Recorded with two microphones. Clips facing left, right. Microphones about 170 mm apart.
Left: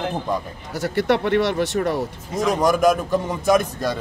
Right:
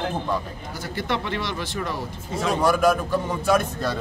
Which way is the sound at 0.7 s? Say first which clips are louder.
Left 8 dB; 70° left (ahead or behind).